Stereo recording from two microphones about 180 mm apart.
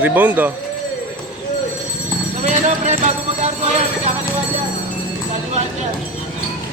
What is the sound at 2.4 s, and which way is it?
Music, 40° right (ahead or behind).